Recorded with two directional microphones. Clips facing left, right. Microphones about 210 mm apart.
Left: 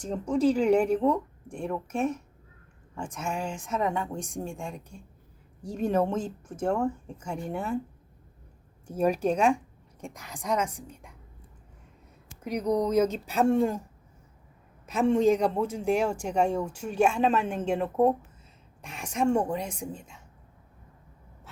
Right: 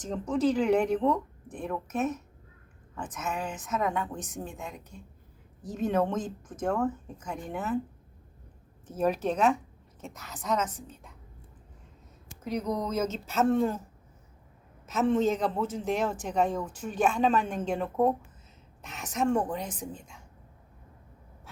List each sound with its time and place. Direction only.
0.0 s speech: 10° left (ahead or behind)
5.6 s speech: 10° left (ahead or behind)
8.9 s speech: 10° left (ahead or behind)
12.9 s speech: 15° left (ahead or behind)
15.1 s a woman's voice: 10° left (ahead or behind)